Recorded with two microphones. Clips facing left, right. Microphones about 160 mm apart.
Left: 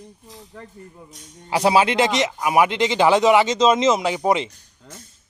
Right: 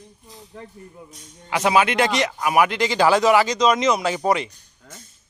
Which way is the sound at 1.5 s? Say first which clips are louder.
Left 2 dB; 30° left (ahead or behind).